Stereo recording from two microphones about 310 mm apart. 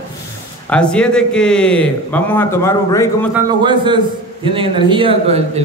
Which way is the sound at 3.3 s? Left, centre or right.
Centre.